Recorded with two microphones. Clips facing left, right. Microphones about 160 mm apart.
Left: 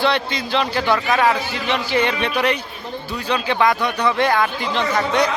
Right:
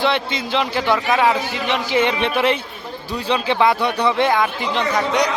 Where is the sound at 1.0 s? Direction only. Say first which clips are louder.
Right 1 dB; 5° right (ahead or behind).